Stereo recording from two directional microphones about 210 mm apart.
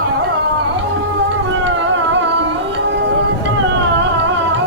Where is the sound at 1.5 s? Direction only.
60° right (ahead or behind).